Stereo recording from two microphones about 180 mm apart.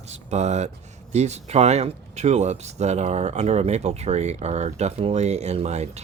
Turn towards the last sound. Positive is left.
turn(degrees=-35)  # may be behind; listen again after turning